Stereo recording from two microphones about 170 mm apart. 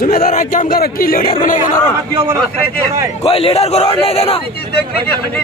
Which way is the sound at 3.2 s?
35° left (ahead or behind).